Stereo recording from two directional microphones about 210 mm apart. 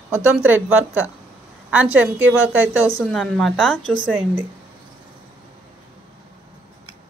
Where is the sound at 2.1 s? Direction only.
65° right (ahead or behind).